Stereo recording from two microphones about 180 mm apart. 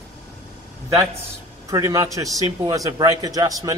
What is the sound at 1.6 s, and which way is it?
A man's voice, 20° right (ahead or behind).